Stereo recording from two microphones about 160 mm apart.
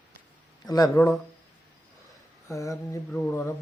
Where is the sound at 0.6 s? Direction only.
25° left (ahead or behind).